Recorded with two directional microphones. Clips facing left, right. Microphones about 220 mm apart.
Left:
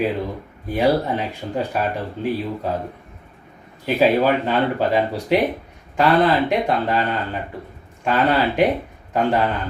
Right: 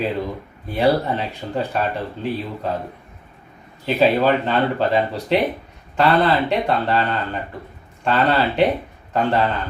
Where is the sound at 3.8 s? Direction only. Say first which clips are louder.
Even; 10° left (ahead or behind).